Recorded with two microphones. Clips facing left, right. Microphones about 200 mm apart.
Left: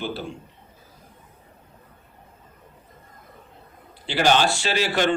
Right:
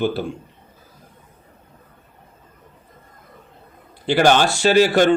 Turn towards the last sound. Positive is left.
turn(degrees=-45)  # may be behind; listen again after turning